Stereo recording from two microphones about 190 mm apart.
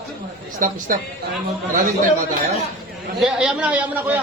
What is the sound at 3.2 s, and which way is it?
Speech, 5° right (ahead or behind).